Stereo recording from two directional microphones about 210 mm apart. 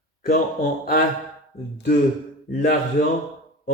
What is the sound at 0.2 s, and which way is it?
Speech, 40° left (ahead or behind).